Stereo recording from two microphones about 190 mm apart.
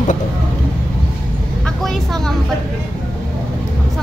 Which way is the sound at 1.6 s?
Centre (ahead or behind).